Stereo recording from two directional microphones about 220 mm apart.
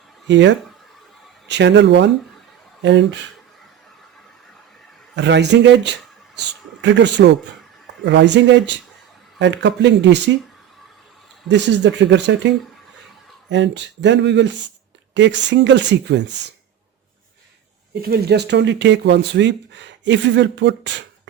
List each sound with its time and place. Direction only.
0.3 s speech: 55° right (ahead or behind)
5.1 s speech: 50° right (ahead or behind)
11.4 s speech: 50° right (ahead or behind)
18.1 s speech: 50° right (ahead or behind)